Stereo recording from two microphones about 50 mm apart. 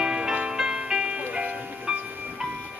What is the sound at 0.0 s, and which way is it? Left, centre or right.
Music, centre.